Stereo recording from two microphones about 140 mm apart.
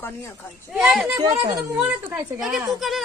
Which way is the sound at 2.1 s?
15° right (ahead or behind).